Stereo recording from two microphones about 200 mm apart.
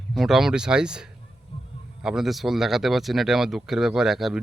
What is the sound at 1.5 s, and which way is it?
Heart sounds, 25° left (ahead or behind).